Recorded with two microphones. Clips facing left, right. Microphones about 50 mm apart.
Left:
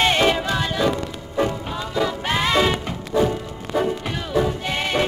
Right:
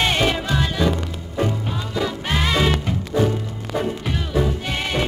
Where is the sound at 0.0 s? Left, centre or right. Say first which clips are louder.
Left 2 dB; centre.